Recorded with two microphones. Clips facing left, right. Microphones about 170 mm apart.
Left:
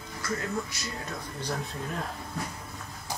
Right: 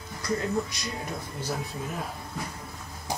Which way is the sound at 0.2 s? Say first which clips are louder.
Right 4 dB; 20° right (ahead or behind).